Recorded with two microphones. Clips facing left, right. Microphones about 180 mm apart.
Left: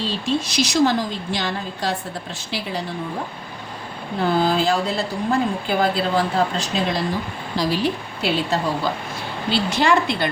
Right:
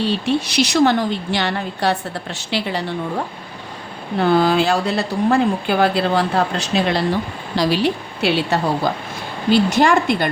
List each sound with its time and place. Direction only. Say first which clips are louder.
0.0 s a woman's voice: right 4 dB; 65° right (ahead or behind)
4.4 s a woman's voice: right 1 dB; 75° right (ahead or behind)
9.5 s a woman's voice: right 5 dB; 50° right (ahead or behind)